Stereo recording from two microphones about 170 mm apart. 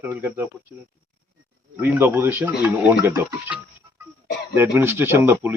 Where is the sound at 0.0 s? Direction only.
10° right (ahead or behind).